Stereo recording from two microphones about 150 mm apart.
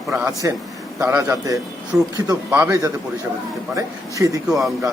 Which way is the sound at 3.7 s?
20° right (ahead or behind).